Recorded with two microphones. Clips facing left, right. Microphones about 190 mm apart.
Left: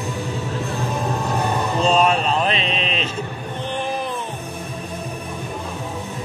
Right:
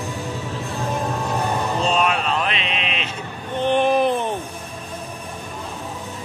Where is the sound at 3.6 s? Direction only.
65° right (ahead or behind).